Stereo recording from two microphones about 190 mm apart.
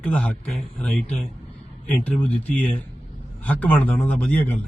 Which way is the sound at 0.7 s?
5° left (ahead or behind).